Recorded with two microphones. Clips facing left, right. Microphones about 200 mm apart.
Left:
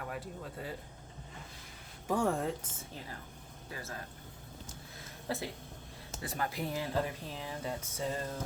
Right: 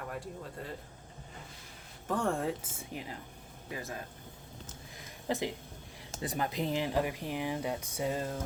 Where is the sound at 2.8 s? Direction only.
15° right (ahead or behind).